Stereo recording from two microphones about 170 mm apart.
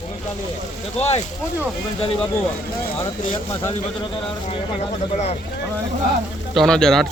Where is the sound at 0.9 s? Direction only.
40° left (ahead or behind).